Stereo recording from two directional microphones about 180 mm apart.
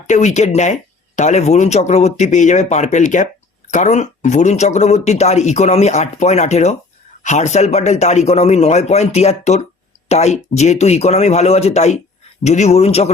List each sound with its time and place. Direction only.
0.1 s speech: 40° left (ahead or behind)